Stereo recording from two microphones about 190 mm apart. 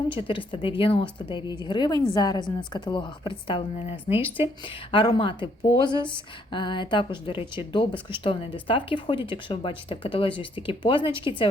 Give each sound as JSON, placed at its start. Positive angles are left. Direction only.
{"t": 0.1, "sound": "speech", "side_deg": 25}